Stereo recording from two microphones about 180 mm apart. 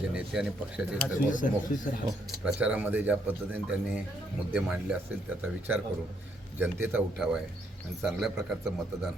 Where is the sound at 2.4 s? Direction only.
5° right (ahead or behind).